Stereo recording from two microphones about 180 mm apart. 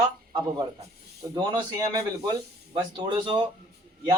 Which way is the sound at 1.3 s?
25° right (ahead or behind).